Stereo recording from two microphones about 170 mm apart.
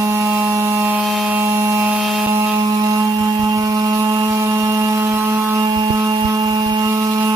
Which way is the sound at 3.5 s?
20° right (ahead or behind).